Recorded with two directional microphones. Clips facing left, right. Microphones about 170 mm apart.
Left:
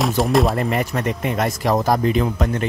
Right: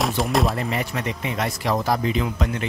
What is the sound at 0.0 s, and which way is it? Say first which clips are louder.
Speech: left 4 dB; centre (ahead or behind).